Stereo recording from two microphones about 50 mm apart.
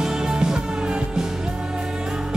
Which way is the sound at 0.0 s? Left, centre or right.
Centre.